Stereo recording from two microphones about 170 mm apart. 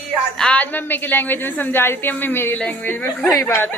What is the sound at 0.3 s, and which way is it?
A woman's voice, 5° left (ahead or behind).